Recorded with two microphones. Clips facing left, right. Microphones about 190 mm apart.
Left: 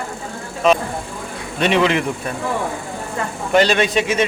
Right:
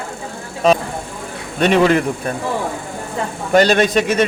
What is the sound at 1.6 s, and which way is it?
Speech, 45° right (ahead or behind).